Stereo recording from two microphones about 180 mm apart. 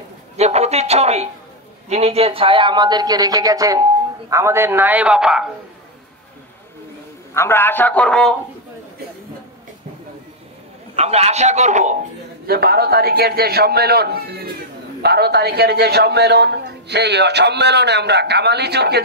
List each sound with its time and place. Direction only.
0.4 s a sound: 35° right (ahead or behind)
1.9 s a man's voice: 35° right (ahead or behind); by 5.5 s 5° right (ahead or behind)
7.3 s a man's voice: 15° left (ahead or behind)
11.0 s a man's voice: 35° right (ahead or behind)
12.4 s a man's voice: 60° right (ahead or behind)